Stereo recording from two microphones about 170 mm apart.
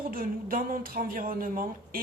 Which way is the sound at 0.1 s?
55° right (ahead or behind).